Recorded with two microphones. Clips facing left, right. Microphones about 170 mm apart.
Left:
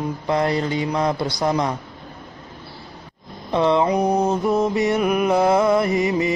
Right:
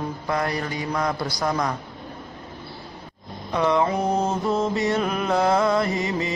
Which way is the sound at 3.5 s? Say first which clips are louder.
Left 3 dB; 25° left (ahead or behind).